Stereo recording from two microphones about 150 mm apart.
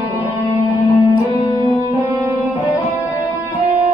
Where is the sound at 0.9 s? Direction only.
25° left (ahead or behind).